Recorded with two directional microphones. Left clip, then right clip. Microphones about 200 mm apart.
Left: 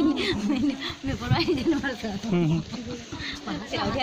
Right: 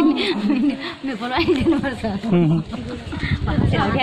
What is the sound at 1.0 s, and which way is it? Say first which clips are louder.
Speech: right 7 dB; 10° right (ahead or behind).